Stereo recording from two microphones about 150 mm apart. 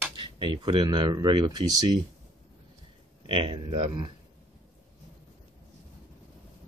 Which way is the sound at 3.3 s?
35° right (ahead or behind).